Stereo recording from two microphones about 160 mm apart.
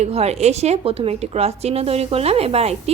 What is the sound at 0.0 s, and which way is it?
A woman's voice, 40° right (ahead or behind).